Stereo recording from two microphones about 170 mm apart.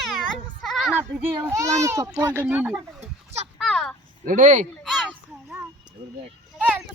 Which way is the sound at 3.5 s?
5° left (ahead or behind).